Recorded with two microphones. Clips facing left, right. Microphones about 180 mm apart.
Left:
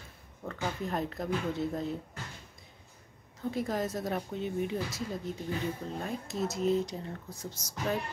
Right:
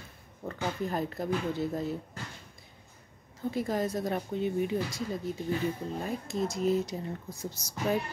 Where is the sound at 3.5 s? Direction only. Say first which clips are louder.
Right 2 dB; centre (ahead or behind).